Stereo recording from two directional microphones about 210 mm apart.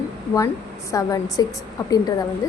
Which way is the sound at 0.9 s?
15° left (ahead or behind).